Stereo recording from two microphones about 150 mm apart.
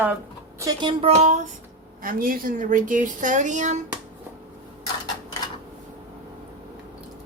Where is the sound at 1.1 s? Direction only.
50° right (ahead or behind).